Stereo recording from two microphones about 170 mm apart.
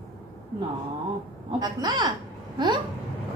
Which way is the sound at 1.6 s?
25° right (ahead or behind).